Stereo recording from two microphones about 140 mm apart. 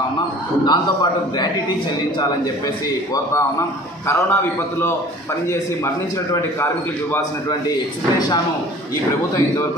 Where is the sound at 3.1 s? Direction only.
20° left (ahead or behind).